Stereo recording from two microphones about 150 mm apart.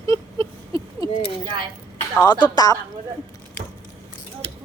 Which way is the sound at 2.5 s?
25° left (ahead or behind).